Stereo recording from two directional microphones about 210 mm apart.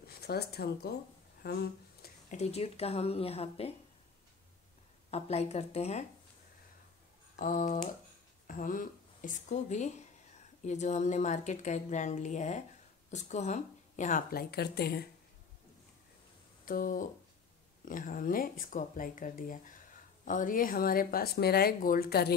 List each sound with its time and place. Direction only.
0.0 s speech: 50° left (ahead or behind)
1.4 s a sound: 50° left (ahead or behind)
2.3 s speech: 30° left (ahead or behind)
5.1 s a woman's voice: 30° left (ahead or behind)
7.3 s a woman's voice: 40° left (ahead or behind)
16.6 s a woman's voice: 40° left (ahead or behind)